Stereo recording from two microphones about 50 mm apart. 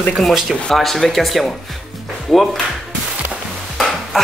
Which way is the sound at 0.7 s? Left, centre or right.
Centre.